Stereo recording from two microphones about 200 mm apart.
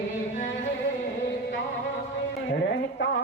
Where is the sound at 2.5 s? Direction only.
60° left (ahead or behind).